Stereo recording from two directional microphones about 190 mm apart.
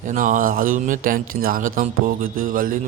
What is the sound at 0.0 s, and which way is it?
Speech, 40° right (ahead or behind).